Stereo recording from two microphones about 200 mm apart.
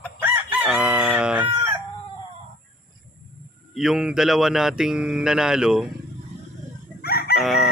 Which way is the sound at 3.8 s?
5° right (ahead or behind).